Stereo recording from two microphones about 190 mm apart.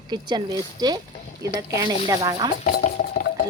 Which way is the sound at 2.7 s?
40° left (ahead or behind).